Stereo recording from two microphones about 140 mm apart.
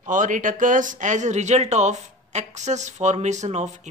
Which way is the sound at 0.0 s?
65° right (ahead or behind).